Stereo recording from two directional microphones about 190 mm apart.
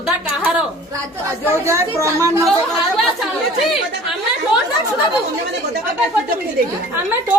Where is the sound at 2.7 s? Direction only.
Centre (ahead or behind).